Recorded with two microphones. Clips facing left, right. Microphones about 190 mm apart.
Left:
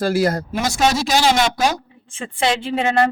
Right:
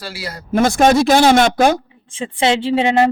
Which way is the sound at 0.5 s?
55° right (ahead or behind).